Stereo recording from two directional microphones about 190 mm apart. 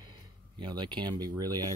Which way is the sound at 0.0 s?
20° right (ahead or behind).